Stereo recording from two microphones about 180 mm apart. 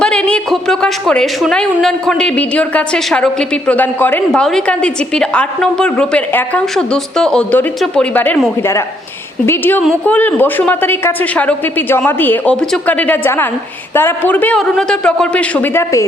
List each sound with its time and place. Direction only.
0.0 s a woman's voice: 5° left (ahead or behind)
9.5 s a woman's voice: 10° left (ahead or behind)